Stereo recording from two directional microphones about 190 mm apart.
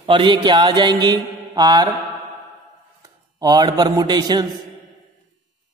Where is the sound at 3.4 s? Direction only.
20° right (ahead or behind).